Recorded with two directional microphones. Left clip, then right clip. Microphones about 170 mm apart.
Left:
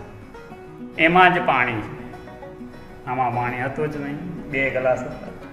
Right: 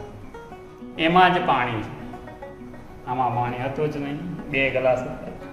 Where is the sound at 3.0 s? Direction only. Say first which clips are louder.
Left 1 dB; 20° left (ahead or behind).